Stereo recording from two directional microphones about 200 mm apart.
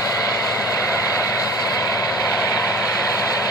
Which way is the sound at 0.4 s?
15° left (ahead or behind).